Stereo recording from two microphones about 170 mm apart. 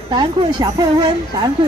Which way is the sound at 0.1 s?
25° right (ahead or behind).